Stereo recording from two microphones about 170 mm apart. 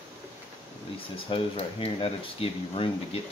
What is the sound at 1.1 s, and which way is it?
Speech, 30° left (ahead or behind).